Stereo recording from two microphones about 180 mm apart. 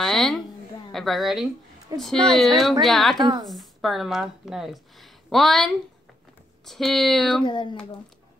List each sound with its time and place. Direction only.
0.0 s a sound: centre (ahead or behind)
0.9 s speech: centre (ahead or behind)
3.2 s a woman's voice: 25° right (ahead or behind)
3.4 s speech: centre (ahead or behind)
7.4 s speech: 25° left (ahead or behind)